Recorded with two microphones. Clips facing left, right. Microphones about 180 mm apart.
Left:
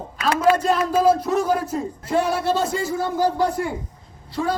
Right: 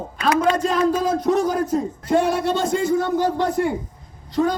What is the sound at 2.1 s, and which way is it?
A man's voice, 5° left (ahead or behind).